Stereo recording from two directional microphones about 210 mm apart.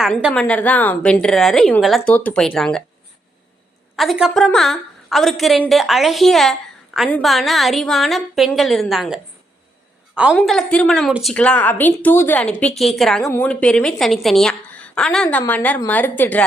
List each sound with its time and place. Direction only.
0.0 s a woman's voice: centre (ahead or behind)
3.9 s a woman's voice: centre (ahead or behind)
10.3 s a woman's voice: 5° left (ahead or behind)